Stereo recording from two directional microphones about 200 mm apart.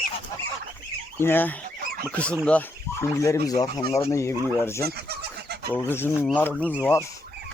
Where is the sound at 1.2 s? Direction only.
10° left (ahead or behind).